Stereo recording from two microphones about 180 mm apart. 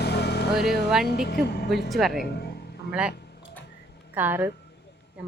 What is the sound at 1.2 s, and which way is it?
Speech, 65° left (ahead or behind).